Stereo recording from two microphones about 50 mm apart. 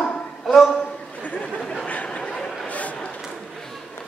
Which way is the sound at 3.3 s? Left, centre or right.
Centre.